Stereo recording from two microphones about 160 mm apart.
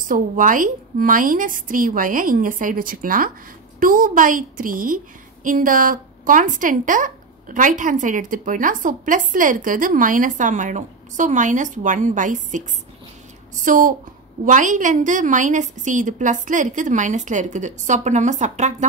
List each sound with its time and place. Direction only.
0.1 s a woman's voice: 55° right (ahead or behind)